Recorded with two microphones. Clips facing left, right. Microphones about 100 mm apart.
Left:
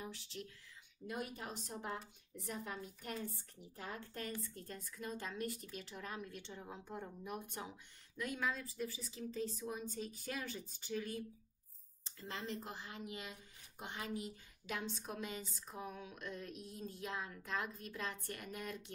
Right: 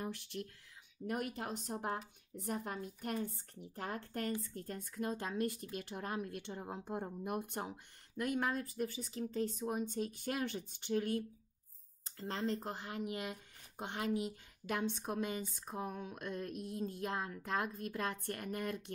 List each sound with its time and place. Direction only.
0.0 s speech: 60° right (ahead or behind)